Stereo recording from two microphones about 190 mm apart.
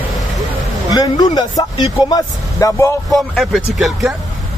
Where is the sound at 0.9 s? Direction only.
20° left (ahead or behind).